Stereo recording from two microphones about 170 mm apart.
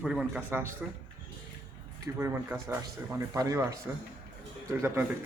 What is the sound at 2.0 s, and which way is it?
Speech, 15° right (ahead or behind).